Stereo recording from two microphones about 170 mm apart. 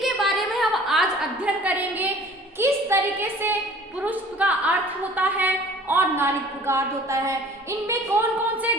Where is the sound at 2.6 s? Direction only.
15° right (ahead or behind).